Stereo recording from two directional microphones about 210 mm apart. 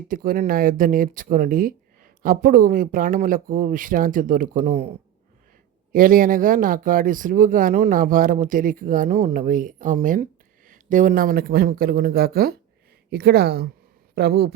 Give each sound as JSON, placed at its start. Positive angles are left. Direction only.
{"t": 0.1, "sound": "speech", "side_deg": -40}
{"t": 5.9, "sound": "speech", "side_deg": -40}